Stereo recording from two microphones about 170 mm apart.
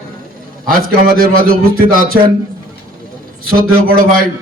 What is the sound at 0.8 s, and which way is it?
A man's voice, 60° right (ahead or behind).